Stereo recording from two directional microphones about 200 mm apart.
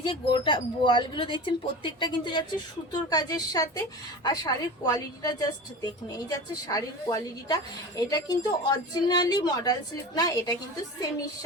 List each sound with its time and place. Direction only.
0.0 s a woman's voice: 25° left (ahead or behind)